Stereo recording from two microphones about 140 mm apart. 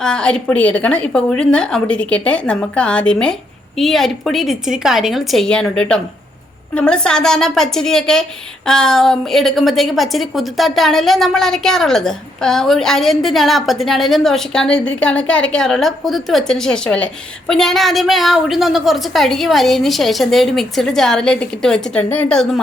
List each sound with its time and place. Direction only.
0.0 s a woman's voice: 5° left (ahead or behind)